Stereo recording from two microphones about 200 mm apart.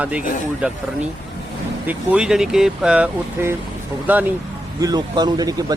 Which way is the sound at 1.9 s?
5° right (ahead or behind).